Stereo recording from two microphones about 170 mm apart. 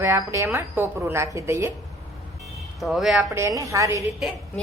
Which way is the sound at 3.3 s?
15° right (ahead or behind).